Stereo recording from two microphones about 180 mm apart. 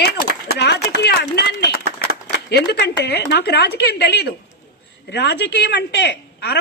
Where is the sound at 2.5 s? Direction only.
70° left (ahead or behind).